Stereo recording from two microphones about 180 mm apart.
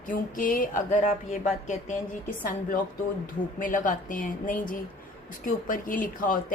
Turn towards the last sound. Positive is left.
turn(degrees=50)  # may be behind; listen again after turning